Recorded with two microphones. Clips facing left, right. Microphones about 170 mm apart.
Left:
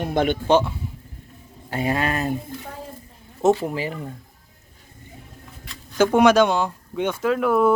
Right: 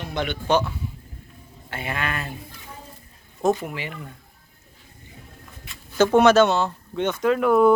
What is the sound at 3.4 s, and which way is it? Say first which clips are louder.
Speech: left 4 dB; 30° left (ahead or behind).